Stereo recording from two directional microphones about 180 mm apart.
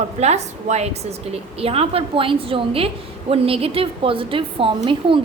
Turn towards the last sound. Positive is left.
turn(degrees=-30)  # may be behind; listen again after turning